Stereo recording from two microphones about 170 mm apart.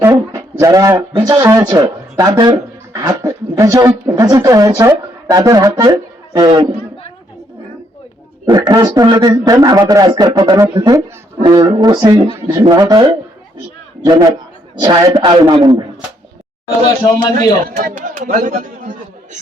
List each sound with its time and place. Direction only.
0.0 s a sound: 15° right (ahead or behind)
1.1 s speech: 30° right (ahead or behind)
8.4 s a man's voice: 25° right (ahead or behind)
17.9 s speech: 50° right (ahead or behind)